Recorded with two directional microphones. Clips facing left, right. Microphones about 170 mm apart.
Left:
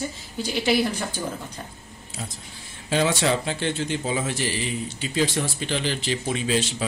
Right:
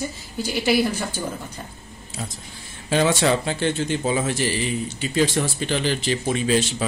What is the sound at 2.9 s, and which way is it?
Speech, 50° right (ahead or behind).